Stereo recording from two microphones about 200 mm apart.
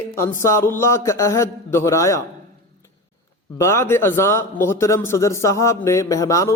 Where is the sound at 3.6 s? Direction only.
15° left (ahead or behind).